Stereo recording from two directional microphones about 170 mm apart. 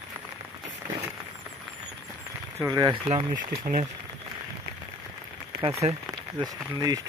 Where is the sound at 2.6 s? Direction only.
20° right (ahead or behind).